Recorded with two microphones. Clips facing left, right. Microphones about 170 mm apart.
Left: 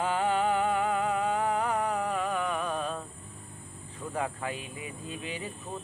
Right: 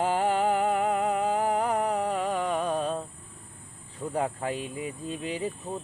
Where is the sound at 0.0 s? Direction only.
40° right (ahead or behind).